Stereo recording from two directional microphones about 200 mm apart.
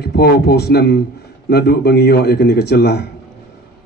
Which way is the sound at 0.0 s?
50° left (ahead or behind).